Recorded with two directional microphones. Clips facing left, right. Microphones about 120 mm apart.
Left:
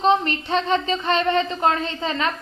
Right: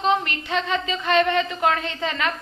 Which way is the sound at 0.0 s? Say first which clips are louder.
Left 3 dB; 35° left (ahead or behind).